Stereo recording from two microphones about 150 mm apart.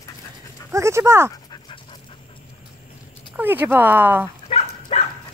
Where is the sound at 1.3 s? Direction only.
30° left (ahead or behind).